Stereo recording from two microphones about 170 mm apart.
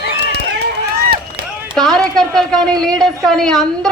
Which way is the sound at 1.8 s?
Centre (ahead or behind).